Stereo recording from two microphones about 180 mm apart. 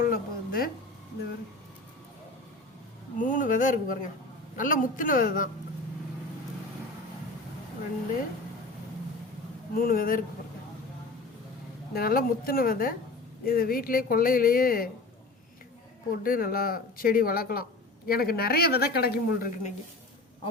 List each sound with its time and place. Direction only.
0.0 s a sound: 55° left (ahead or behind)
3.2 s a sound: 45° left (ahead or behind)
4.5 s speech: 50° left (ahead or behind)
9.7 s speech: 55° left (ahead or behind)
11.9 s speech: 55° left (ahead or behind)
16.2 s speech: 55° left (ahead or behind)